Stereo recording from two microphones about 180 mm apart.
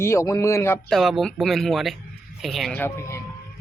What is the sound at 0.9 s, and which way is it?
Speech, centre (ahead or behind).